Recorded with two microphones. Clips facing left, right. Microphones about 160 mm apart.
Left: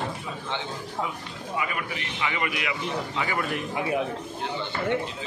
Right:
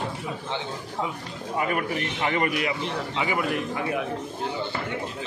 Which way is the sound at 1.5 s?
45° right (ahead or behind).